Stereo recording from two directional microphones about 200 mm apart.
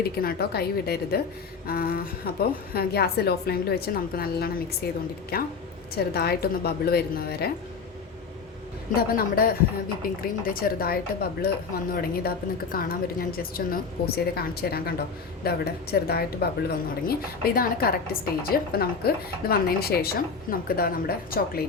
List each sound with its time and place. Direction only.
0.0 s speech: 50° left (ahead or behind)
9.0 s speech: 50° left (ahead or behind)